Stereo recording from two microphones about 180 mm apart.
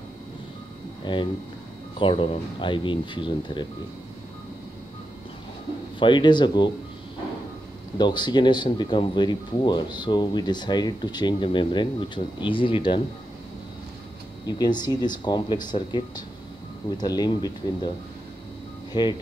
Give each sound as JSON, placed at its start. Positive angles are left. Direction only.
{"t": 1.0, "sound": "speech", "side_deg": 25}
{"t": 5.9, "sound": "speech", "side_deg": 25}
{"t": 8.0, "sound": "speech", "side_deg": 25}
{"t": 14.4, "sound": "speech", "side_deg": 25}
{"t": 18.9, "sound": "speech", "side_deg": 25}